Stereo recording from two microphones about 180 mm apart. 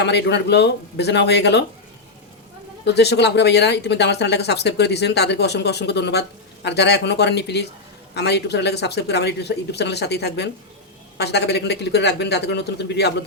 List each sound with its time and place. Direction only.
0.0 s speech: 70° left (ahead or behind)
2.8 s speech: 70° left (ahead or behind)